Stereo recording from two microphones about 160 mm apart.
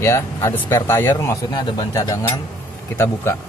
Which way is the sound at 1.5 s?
25° left (ahead or behind).